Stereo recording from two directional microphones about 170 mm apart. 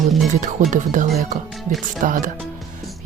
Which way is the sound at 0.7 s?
45° right (ahead or behind).